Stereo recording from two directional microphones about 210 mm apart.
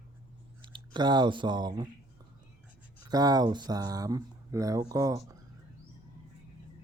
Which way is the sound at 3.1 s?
20° right (ahead or behind).